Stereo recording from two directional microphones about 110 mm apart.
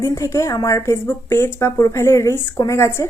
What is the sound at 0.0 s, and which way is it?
A woman's voice, 25° left (ahead or behind).